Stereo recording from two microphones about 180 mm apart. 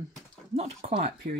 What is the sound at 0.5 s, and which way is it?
Speech, 35° right (ahead or behind).